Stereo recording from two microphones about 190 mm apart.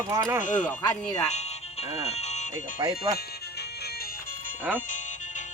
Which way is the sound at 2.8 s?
20° right (ahead or behind).